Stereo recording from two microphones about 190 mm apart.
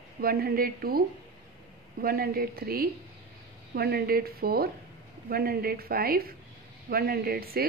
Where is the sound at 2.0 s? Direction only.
55° right (ahead or behind).